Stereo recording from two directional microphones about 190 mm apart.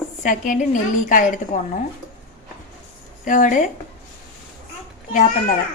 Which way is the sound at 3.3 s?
45° left (ahead or behind).